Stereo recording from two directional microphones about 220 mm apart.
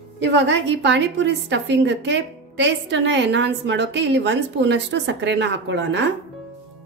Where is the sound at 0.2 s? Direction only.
55° right (ahead or behind).